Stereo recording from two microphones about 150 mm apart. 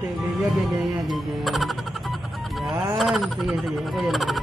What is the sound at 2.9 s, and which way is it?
Speech, centre (ahead or behind).